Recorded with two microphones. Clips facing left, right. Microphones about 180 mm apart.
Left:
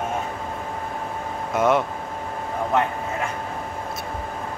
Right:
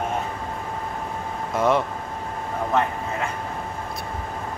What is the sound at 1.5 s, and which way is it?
Speech, centre (ahead or behind).